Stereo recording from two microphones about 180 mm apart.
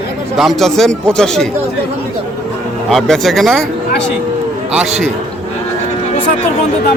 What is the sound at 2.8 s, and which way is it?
Speech, centre (ahead or behind).